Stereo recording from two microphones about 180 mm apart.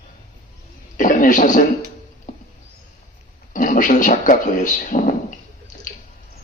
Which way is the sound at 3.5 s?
45° left (ahead or behind).